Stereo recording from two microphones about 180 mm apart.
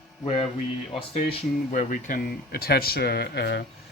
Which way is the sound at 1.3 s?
45° left (ahead or behind).